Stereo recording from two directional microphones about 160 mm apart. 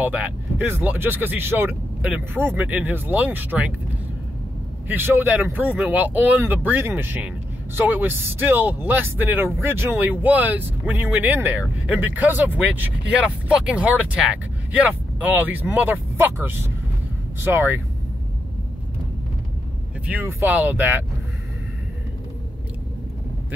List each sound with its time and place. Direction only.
0.0 s speech: 10° right (ahead or behind)
4.8 s speech: 15° right (ahead or behind)
20.1 s speech: 10° right (ahead or behind)